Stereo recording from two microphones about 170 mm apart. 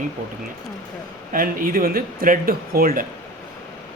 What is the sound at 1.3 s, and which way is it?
Speech, 55° right (ahead or behind).